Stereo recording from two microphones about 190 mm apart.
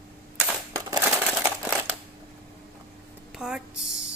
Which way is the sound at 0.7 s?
20° right (ahead or behind).